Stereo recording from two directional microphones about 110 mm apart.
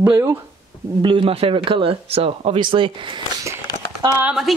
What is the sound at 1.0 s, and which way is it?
Speech, 50° right (ahead or behind).